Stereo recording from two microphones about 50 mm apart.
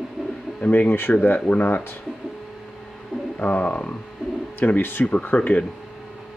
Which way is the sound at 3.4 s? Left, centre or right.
Left.